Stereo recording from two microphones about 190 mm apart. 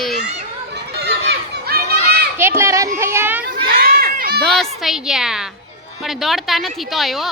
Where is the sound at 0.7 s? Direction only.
60° right (ahead or behind).